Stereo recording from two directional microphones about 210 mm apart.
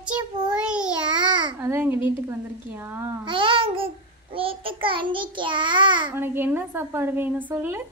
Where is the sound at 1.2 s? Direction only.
20° right (ahead or behind).